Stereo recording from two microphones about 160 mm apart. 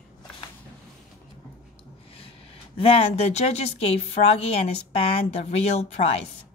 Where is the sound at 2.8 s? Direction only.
40° left (ahead or behind).